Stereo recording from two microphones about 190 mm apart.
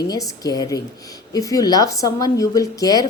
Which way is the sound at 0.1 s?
20° left (ahead or behind).